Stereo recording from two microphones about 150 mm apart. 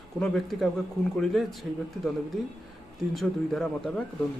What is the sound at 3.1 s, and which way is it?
Speech, centre (ahead or behind).